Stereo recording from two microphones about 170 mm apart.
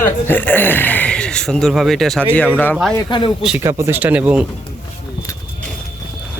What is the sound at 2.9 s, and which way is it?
Speech, 30° left (ahead or behind).